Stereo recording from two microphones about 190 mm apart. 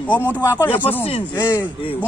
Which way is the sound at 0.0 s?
10° left (ahead or behind).